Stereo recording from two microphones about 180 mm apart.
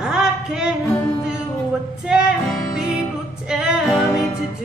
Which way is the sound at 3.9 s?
15° left (ahead or behind).